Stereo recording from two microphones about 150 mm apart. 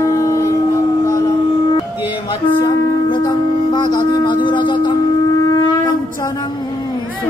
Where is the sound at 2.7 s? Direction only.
30° left (ahead or behind).